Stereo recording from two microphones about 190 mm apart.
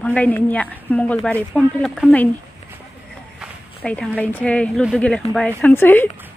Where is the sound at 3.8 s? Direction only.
5° left (ahead or behind).